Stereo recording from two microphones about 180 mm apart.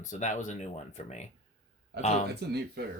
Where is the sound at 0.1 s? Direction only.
45° left (ahead or behind).